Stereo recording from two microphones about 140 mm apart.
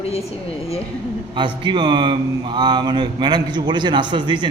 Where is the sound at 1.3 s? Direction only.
35° right (ahead or behind).